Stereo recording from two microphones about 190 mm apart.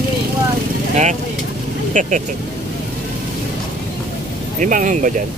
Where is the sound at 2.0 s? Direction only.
40° right (ahead or behind).